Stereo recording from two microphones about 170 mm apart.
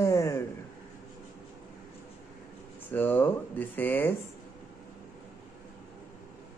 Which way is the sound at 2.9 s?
10° left (ahead or behind).